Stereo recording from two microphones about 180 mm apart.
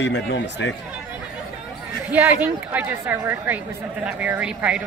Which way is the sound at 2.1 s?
10° right (ahead or behind).